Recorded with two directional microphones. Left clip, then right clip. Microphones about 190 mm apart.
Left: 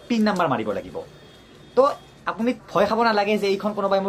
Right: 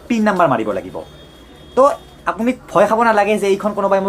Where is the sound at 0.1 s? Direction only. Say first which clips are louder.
Right 7 dB; 15° left (ahead or behind).